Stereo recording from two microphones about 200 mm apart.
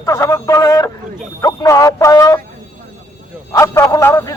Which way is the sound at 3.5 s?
15° left (ahead or behind).